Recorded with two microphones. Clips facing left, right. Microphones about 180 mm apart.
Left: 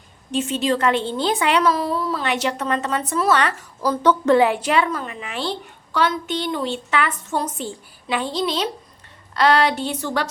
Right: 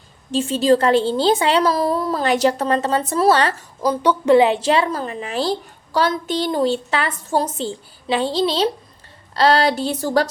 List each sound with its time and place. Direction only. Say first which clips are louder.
0.3 s a woman's voice: right 5 dB; 30° right (ahead or behind)
3.8 s a woman's voice: even; 15° right (ahead or behind); by 10.2 s 40° right (ahead or behind)